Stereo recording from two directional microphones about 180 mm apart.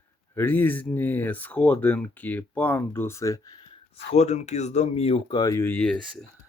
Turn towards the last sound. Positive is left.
turn(degrees=10)  # may be behind; listen again after turning